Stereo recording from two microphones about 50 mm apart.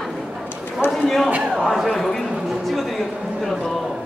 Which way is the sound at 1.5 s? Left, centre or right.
Centre.